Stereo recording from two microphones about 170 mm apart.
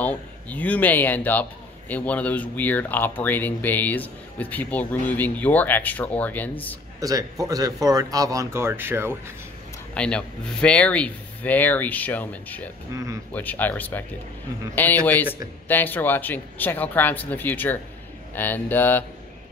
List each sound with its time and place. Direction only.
0.0 s a man's voice: 10° left (ahead or behind)
7.0 s speech: 20° right (ahead or behind)
9.9 s a man's voice: 5° left (ahead or behind)
12.9 s speech: 20° right (ahead or behind)
13.3 s a man's voice: 10° left (ahead or behind)